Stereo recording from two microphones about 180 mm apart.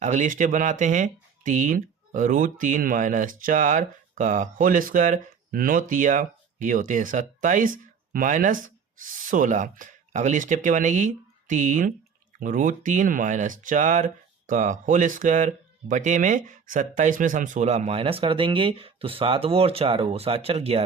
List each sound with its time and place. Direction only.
0.0 s speech: 45° right (ahead or behind)